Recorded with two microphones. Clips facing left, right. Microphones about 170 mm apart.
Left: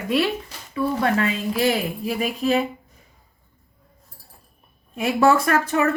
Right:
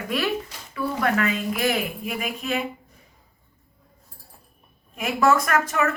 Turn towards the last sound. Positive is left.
turn(degrees=30)  # may be behind; listen again after turning